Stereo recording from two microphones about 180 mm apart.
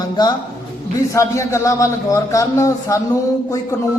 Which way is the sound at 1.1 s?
15° left (ahead or behind).